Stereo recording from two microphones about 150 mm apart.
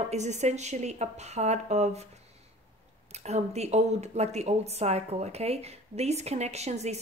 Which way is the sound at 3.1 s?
45° right (ahead or behind).